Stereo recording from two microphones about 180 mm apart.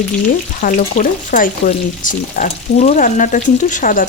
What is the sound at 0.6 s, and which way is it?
Speech, 50° left (ahead or behind).